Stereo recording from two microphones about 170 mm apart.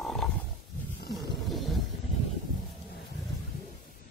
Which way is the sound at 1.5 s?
Centre (ahead or behind).